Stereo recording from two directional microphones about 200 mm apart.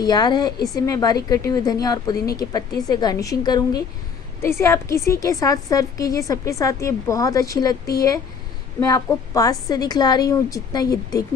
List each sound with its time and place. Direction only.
0.0 s a woman's voice: 20° left (ahead or behind)